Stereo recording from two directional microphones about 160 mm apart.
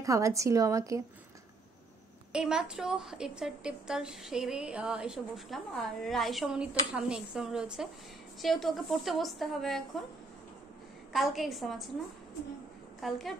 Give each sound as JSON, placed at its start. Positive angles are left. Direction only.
{"t": 0.0, "sound": "a woman's voice", "side_deg": -20}
{"t": 2.3, "sound": "a woman's voice", "side_deg": -5}
{"t": 11.1, "sound": "a woman's voice", "side_deg": 0}
{"t": 13.0, "sound": "a woman's voice", "side_deg": 0}